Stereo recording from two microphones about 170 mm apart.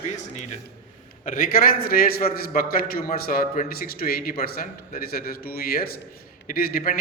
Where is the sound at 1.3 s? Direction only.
55° left (ahead or behind).